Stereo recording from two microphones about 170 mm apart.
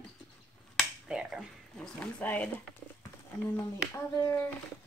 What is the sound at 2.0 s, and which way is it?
Speech, 10° left (ahead or behind).